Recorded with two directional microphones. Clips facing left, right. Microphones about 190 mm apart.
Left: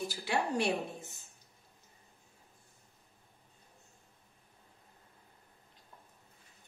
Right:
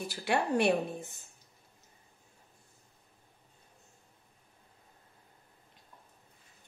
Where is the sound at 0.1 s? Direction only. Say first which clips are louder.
Right 6 dB; 60° right (ahead or behind).